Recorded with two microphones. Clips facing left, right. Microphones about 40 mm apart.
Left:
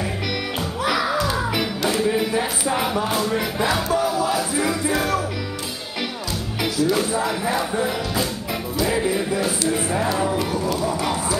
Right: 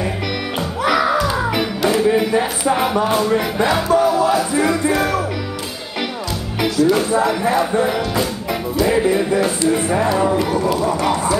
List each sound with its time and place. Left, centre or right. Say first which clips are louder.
0.8 s music: right 5 dB; centre
6.6 s music: right 5 dB; centre